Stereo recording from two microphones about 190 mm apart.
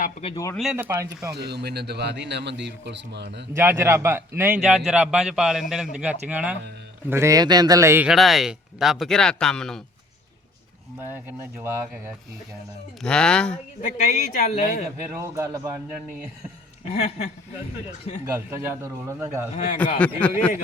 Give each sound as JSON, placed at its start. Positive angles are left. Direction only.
{"t": 0.0, "sound": "speech", "side_deg": 30}
{"t": 0.5, "sound": "a man's voice", "side_deg": -5}
{"t": 1.4, "sound": "a man's voice", "side_deg": -60}
{"t": 3.5, "sound": "a man's voice", "side_deg": -15}
{"t": 8.1, "sound": "speech", "side_deg": 0}
{"t": 11.0, "sound": "a man's voice", "side_deg": -10}
{"t": 13.0, "sound": "speech", "side_deg": 5}
{"t": 13.8, "sound": "speech", "side_deg": 45}
{"t": 15.1, "sound": "a man's voice", "side_deg": -15}
{"t": 16.8, "sound": "speech", "side_deg": 35}
{"t": 18.3, "sound": "a man's voice", "side_deg": -15}
{"t": 20.2, "sound": "speech", "side_deg": 10}